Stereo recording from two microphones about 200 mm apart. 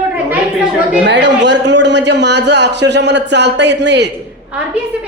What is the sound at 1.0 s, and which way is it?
A man's voice, 60° right (ahead or behind).